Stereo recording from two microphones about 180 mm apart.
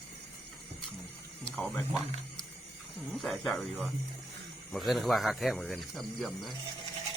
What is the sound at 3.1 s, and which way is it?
Speech, centre (ahead or behind).